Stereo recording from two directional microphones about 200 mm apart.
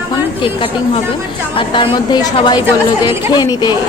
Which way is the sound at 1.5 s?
25° left (ahead or behind).